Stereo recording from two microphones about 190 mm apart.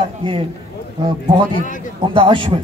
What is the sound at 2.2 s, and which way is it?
Speech, 25° right (ahead or behind).